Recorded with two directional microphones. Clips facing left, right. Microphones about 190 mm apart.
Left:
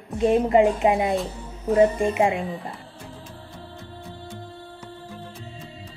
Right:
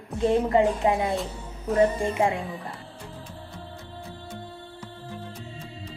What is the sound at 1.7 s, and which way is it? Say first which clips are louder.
Speech: left 3 dB; 20° left (ahead or behind).